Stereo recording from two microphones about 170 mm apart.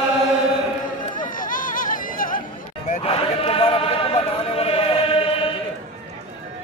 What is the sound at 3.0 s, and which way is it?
Chant, 35° left (ahead or behind).